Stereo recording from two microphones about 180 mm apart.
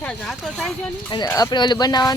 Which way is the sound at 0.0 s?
Centre (ahead or behind).